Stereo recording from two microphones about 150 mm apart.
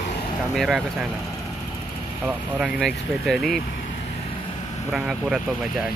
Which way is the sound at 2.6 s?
Centre (ahead or behind).